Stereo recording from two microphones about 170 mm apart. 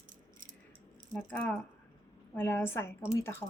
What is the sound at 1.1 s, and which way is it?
A woman's voice, 10° left (ahead or behind).